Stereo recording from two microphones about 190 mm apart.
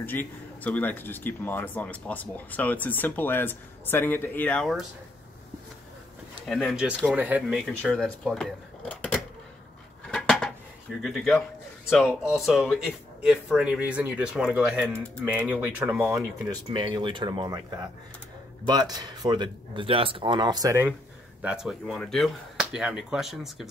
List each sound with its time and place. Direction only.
0.0 s speech: 10° left (ahead or behind)
6.4 s a man's voice: centre (ahead or behind)
7.6 s speech: 5° left (ahead or behind)
10.1 s dishes: 5° left (ahead or behind)
11.0 s a man's voice: centre (ahead or behind); by 17.6 s 25° right (ahead or behind)
18.7 s speech: 20° right (ahead or behind)
21.4 s a man's voice: 5° right (ahead or behind)